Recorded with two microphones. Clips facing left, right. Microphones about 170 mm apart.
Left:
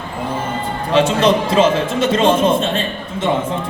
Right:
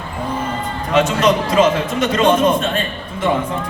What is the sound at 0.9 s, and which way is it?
A man's voice, 30° left (ahead or behind).